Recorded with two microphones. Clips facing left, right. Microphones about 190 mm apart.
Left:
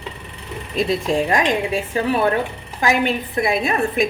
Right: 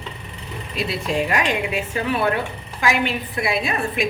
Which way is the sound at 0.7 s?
45° left (ahead or behind).